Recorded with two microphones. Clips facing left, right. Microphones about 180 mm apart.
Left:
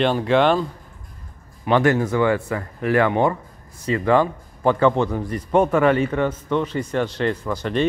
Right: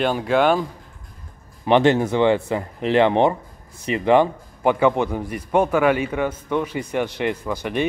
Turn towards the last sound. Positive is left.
turn(degrees=-15)  # may be behind; listen again after turning